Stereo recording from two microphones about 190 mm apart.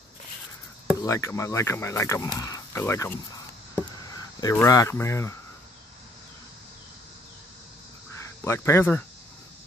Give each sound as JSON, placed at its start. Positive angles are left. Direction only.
{"t": 1.0, "sound": "speech", "side_deg": 15}
{"t": 8.2, "sound": "speech", "side_deg": 15}